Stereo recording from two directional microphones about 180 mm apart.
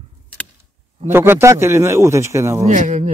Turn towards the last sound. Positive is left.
turn(degrees=-40)  # may be behind; listen again after turning